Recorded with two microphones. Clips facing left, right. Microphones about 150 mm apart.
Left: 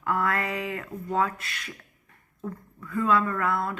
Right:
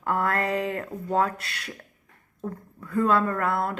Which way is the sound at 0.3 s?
50° right (ahead or behind).